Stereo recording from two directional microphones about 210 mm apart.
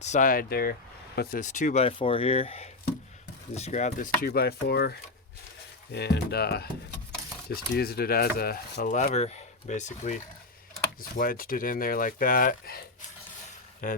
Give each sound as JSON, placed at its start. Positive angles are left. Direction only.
{"t": 0.0, "sound": "speech", "side_deg": 35}
{"t": 11.2, "sound": "speech", "side_deg": 45}
{"t": 13.8, "sound": "speech", "side_deg": 40}